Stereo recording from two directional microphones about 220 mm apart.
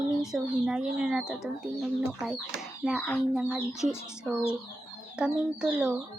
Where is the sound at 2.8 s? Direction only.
Centre (ahead or behind).